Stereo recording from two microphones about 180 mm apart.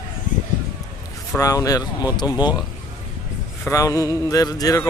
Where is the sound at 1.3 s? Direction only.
20° left (ahead or behind).